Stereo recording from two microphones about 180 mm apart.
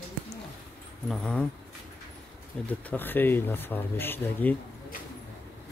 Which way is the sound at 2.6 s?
10° left (ahead or behind).